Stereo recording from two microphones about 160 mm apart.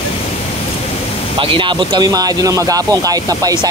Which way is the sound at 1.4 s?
30° right (ahead or behind).